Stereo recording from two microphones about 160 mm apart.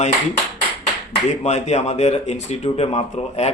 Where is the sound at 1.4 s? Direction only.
45° left (ahead or behind).